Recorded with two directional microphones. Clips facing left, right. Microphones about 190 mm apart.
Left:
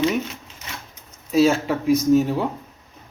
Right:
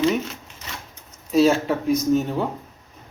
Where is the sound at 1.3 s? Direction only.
Centre (ahead or behind).